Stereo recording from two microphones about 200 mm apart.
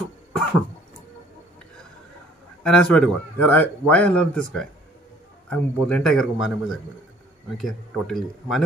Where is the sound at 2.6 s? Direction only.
5° left (ahead or behind).